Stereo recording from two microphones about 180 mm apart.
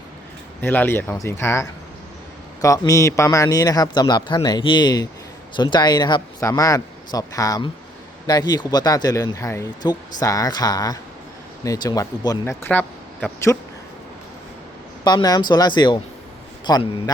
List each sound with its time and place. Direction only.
0.6 s a man's voice: 10° left (ahead or behind)
15.0 s a man's voice: 20° left (ahead or behind)